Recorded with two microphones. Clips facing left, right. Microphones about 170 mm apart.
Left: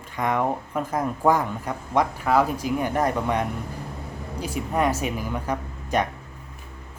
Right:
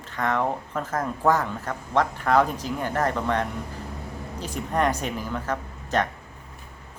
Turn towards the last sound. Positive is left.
turn(degrees=10)  # may be behind; listen again after turning